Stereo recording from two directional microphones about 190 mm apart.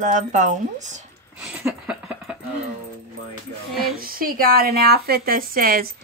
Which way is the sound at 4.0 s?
50° right (ahead or behind).